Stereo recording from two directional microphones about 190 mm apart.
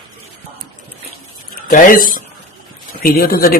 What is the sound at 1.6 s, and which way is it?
A woman's voice, 45° left (ahead or behind).